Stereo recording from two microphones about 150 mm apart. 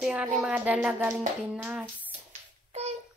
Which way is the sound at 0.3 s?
5° right (ahead or behind).